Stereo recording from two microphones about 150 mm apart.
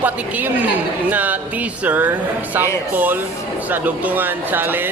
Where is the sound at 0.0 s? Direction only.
10° right (ahead or behind).